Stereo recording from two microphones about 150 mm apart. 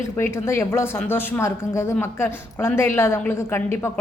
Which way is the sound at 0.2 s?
15° left (ahead or behind).